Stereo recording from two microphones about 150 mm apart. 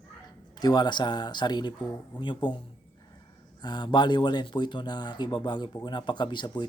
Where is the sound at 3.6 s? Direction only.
30° left (ahead or behind).